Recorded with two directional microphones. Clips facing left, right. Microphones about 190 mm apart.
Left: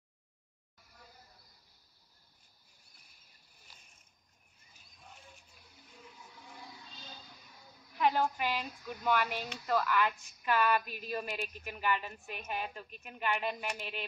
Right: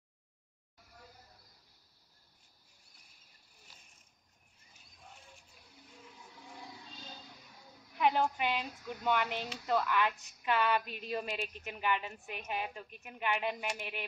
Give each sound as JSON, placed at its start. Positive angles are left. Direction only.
{"t": 8.0, "sound": "a woman's voice", "side_deg": -20}